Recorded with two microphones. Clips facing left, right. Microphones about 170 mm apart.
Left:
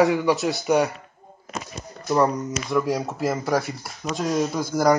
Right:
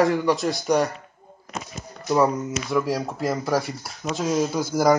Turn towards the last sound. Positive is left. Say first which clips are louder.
# right 1 dB
turn(degrees=0)  # may be behind; listen again after turning